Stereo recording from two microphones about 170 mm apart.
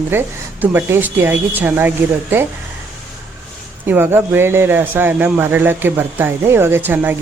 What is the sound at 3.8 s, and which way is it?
Speech, 10° right (ahead or behind).